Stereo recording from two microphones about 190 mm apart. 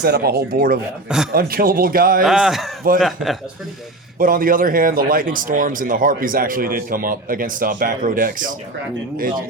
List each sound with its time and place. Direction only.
0.0 s speech: 55° right (ahead or behind)
2.2 s speech: centre (ahead or behind)
4.2 s speech: 45° right (ahead or behind)